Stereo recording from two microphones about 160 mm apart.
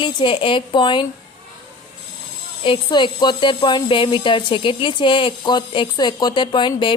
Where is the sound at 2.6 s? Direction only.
30° left (ahead or behind).